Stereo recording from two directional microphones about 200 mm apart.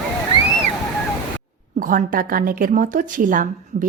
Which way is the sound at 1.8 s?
40° right (ahead or behind).